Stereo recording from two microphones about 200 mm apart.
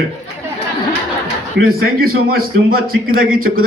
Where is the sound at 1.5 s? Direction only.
50° right (ahead or behind).